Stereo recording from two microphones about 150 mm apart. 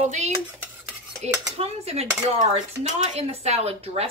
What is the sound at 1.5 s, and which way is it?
Speech, 45° right (ahead or behind).